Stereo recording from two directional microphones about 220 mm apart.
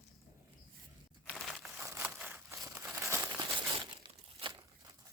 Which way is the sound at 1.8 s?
10° right (ahead or behind).